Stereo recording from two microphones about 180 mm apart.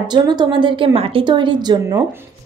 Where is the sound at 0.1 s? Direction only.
25° right (ahead or behind).